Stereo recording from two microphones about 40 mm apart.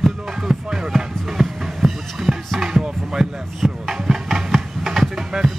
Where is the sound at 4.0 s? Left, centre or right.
Centre.